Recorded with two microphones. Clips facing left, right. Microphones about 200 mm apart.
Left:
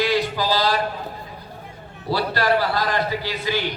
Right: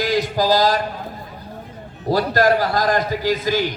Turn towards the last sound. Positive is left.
turn(degrees=-45)  # may be behind; listen again after turning